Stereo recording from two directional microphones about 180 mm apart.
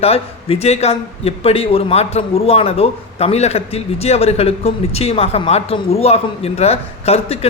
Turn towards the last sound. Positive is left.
turn(degrees=35)  # may be behind; listen again after turning